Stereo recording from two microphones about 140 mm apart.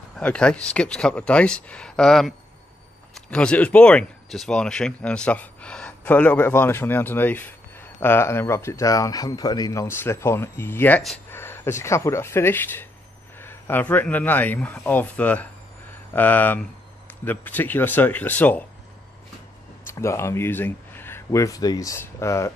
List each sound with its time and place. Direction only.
0.2 s speech: 5° left (ahead or behind)
11.2 s a sound: 15° left (ahead or behind)
11.8 s speech: 20° left (ahead or behind)
19.9 s speech: 20° left (ahead or behind)